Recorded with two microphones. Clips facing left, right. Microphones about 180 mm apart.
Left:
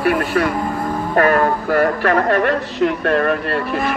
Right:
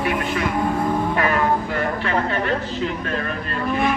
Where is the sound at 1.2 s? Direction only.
55° left (ahead or behind).